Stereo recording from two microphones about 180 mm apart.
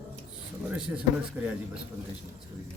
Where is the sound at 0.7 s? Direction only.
5° right (ahead or behind).